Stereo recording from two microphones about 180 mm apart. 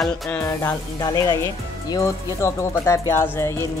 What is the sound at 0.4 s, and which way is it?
Speech, 15° left (ahead or behind).